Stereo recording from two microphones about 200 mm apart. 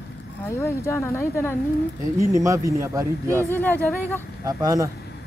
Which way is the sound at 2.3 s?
15° right (ahead or behind).